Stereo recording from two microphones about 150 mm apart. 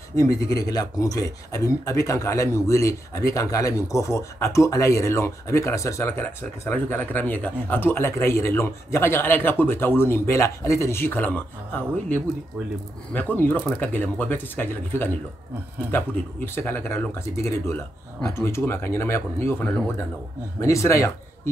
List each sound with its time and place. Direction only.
0.1 s speech: 20° left (ahead or behind)
18.3 s speech: 15° left (ahead or behind)